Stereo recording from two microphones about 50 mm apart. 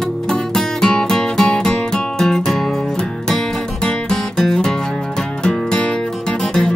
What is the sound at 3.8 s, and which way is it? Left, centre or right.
Music, centre.